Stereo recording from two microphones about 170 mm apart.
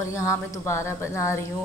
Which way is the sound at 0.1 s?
15° left (ahead or behind).